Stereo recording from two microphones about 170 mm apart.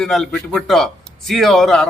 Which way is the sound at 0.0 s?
Centre (ahead or behind).